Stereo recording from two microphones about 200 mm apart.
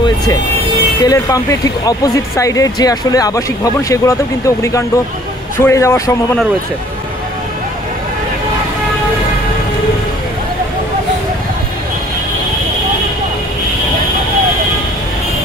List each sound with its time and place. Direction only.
1.0 s speech: 15° left (ahead or behind)